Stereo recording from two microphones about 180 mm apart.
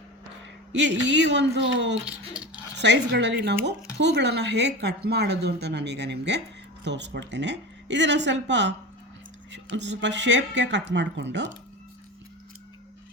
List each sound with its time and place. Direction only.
0.7 s speech: 80° right
2.0 s speech: 5° right (ahead or behind)
2.7 s speech: 75° right (ahead or behind)